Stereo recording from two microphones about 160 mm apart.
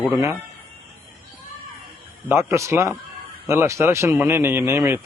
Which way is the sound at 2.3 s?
15° right (ahead or behind).